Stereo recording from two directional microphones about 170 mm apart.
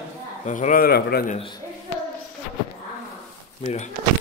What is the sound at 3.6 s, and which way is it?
Speech, 40° left (ahead or behind).